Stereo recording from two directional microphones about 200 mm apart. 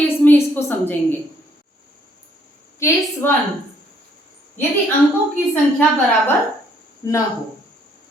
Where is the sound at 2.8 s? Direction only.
15° left (ahead or behind).